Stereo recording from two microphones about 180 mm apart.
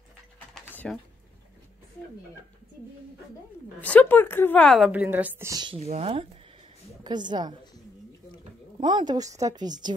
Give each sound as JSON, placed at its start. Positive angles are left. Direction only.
{"t": 0.8, "sound": "speech", "side_deg": 5}
{"t": 3.8, "sound": "a woman's voice", "side_deg": 10}
{"t": 8.7, "sound": "a woman's voice", "side_deg": -25}